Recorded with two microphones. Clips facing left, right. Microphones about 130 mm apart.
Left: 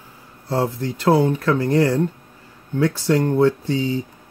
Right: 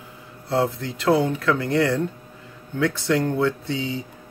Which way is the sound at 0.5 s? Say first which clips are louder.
Left 1 dB; 40° left (ahead or behind).